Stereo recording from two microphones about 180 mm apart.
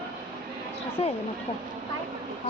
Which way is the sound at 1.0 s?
30° left (ahead or behind).